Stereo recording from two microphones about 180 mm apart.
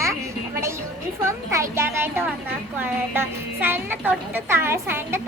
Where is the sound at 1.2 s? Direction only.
15° right (ahead or behind).